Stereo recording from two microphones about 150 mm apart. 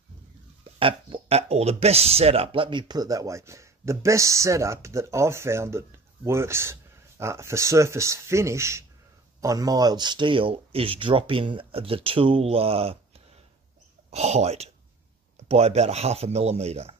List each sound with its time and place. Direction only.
0.7 s speech: 35° right (ahead or behind)
14.1 s speech: 45° right (ahead or behind)